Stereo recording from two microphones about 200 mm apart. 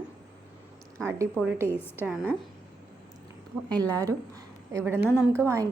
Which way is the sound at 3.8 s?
15° right (ahead or behind).